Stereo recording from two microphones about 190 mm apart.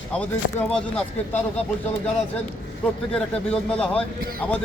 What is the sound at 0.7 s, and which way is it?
Speech, 5° left (ahead or behind).